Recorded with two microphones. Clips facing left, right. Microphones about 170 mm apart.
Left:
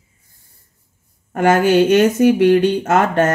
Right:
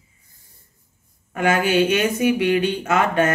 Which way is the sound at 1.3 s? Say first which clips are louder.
Left 6 dB; 50° left (ahead or behind).